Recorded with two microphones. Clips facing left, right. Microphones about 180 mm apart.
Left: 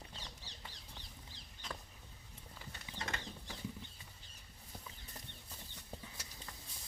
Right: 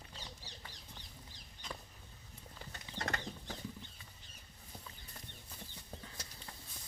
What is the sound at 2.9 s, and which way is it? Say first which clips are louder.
Bird flight: right 4 dB; 60° right (ahead or behind).